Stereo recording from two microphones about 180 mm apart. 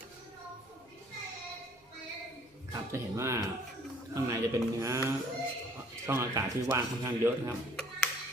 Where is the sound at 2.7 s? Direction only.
15° right (ahead or behind).